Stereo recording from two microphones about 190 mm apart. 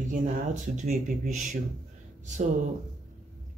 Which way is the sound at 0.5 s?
40° right (ahead or behind).